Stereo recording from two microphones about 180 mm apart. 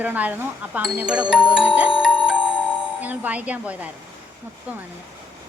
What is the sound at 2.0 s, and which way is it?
Clock, 5° right (ahead or behind).